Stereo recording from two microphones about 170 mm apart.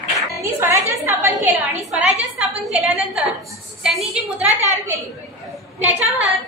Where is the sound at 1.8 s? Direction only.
Centre (ahead or behind).